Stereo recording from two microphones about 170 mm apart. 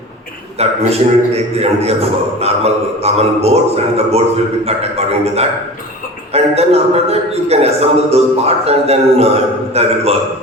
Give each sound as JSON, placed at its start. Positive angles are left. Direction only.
{"t": 0.6, "sound": "a man's voice", "side_deg": -35}